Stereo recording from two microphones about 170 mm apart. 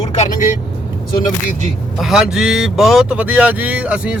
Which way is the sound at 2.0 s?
5° right (ahead or behind).